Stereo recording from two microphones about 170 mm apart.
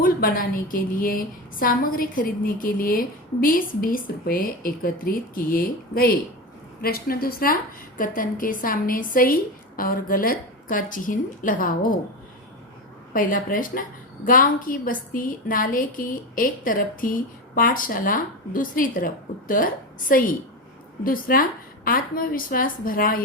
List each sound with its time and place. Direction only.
0.0 s a woman's voice: 55° left (ahead or behind)
13.1 s a woman's voice: 55° left (ahead or behind)